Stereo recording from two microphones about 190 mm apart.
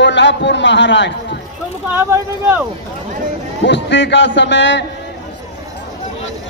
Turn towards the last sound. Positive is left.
turn(degrees=70)  # may be behind; listen again after turning